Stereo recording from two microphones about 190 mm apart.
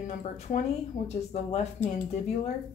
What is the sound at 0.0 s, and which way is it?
A woman's voice, 40° left (ahead or behind).